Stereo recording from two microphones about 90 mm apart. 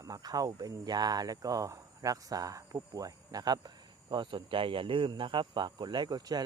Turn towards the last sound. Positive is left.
turn(degrees=-50)  # may be behind; listen again after turning